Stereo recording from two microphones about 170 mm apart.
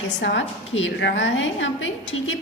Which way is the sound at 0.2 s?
90° left.